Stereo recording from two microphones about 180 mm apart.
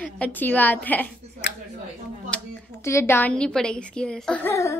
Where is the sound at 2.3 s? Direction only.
5° left (ahead or behind).